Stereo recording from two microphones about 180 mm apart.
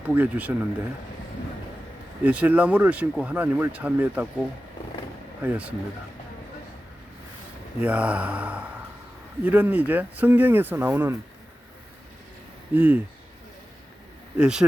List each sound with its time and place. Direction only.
0.1 s speech: 10° right (ahead or behind)
2.2 s speech: 10° right (ahead or behind)
5.4 s speech: 10° right (ahead or behind)
7.8 s speech: 5° right (ahead or behind)
12.7 s speech: 10° right (ahead or behind)
14.3 s speech: 5° right (ahead or behind)